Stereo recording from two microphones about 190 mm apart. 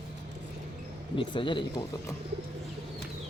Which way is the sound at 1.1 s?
25° left (ahead or behind).